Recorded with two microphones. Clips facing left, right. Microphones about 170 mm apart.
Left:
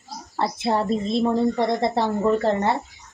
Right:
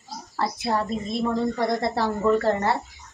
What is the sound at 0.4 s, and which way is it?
Speech, 25° left (ahead or behind).